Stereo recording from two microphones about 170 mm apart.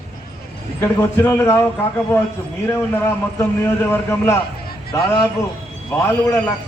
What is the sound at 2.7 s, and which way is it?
A man's voice, 15° left (ahead or behind).